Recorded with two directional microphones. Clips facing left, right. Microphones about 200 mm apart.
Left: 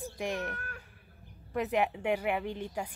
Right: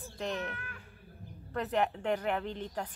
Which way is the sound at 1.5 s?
10° left (ahead or behind).